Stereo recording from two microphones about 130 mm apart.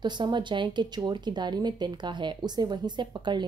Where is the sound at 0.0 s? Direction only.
35° right (ahead or behind).